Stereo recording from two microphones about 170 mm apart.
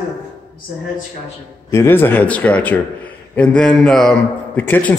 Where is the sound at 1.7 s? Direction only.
15° left (ahead or behind).